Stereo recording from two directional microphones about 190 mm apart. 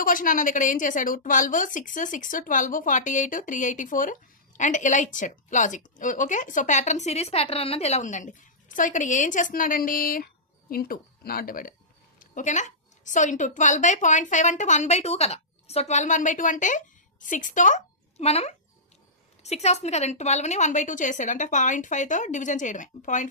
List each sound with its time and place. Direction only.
0.0 s a woman's voice: 45° left (ahead or behind)